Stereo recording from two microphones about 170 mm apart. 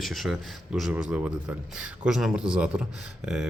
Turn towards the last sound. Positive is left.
turn(degrees=-5)  # may be behind; listen again after turning